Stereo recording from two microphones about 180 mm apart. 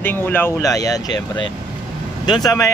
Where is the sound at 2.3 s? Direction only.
20° left (ahead or behind).